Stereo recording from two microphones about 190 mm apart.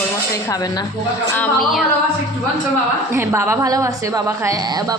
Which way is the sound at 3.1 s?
15° right (ahead or behind).